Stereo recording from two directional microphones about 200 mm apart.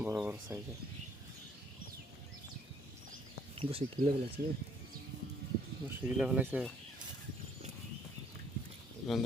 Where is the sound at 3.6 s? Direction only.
30° right (ahead or behind).